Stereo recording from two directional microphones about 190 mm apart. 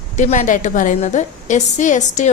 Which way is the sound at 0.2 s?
40° left (ahead or behind).